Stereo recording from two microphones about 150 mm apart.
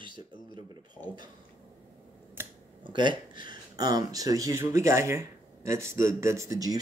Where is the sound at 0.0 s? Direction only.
30° right (ahead or behind).